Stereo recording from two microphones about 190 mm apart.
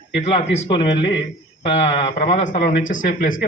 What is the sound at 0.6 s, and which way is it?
Speech, 25° left (ahead or behind).